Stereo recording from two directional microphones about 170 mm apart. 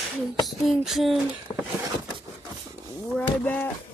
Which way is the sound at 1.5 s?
15° left (ahead or behind).